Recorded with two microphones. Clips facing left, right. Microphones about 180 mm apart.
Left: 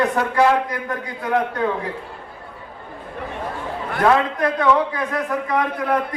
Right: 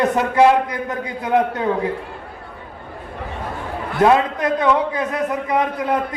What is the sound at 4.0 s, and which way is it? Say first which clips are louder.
A man's voice: right 2 dB; 20° right (ahead or behind).